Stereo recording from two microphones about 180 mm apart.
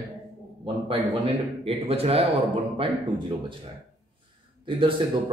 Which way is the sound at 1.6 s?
35° right (ahead or behind).